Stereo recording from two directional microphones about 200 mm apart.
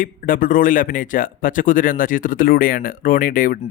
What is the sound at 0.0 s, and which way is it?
A man's voice, 45° left (ahead or behind).